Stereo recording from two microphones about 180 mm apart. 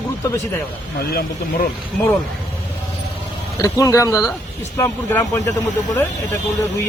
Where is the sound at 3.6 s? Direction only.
20° left (ahead or behind).